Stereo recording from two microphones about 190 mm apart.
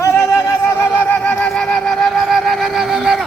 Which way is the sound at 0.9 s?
10° left (ahead or behind).